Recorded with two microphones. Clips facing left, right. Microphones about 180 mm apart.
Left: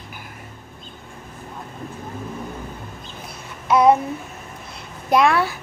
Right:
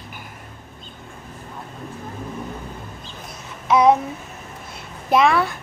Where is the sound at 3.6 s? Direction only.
Centre (ahead or behind).